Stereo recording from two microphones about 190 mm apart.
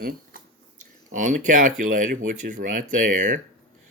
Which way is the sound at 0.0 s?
50° right (ahead or behind).